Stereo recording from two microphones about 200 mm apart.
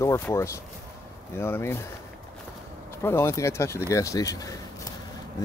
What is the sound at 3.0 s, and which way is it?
Speech, 10° left (ahead or behind).